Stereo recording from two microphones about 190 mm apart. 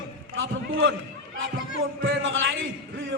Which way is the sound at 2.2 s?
85° right.